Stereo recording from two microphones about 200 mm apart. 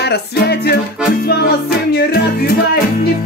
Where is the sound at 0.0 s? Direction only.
55° left (ahead or behind).